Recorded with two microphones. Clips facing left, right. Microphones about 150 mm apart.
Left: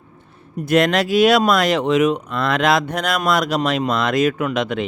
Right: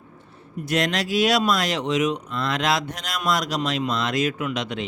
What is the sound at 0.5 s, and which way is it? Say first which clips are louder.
Speech: left 8 dB; 55° left (ahead or behind).